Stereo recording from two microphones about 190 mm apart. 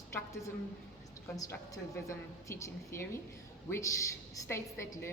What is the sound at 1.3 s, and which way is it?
A woman's voice, 20° left (ahead or behind).